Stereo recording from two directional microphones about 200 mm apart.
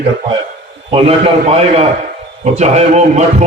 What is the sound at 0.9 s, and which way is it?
A man's voice, 30° right (ahead or behind).